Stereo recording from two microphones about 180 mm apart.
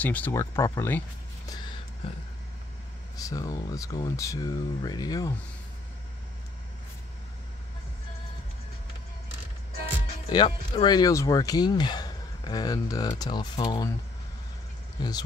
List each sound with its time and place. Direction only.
0.0 s speech: 10° left (ahead or behind)
2.0 s vehicle: 30° left (ahead or behind)
3.2 s speech: 20° left (ahead or behind)
10.3 s speech: 25° left (ahead or behind)
15.0 s speech: 20° left (ahead or behind)